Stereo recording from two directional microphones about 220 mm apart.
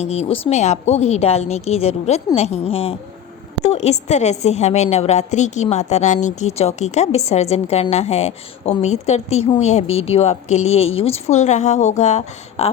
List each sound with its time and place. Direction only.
0.0 s a woman's voice: 30° left (ahead or behind)